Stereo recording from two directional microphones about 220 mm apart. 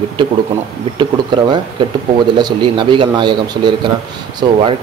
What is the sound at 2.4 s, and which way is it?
Speech, 20° right (ahead or behind).